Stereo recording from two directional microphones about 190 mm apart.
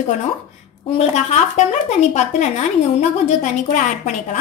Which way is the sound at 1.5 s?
40° left (ahead or behind).